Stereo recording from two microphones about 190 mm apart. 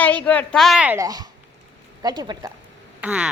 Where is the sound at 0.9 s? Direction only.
20° right (ahead or behind).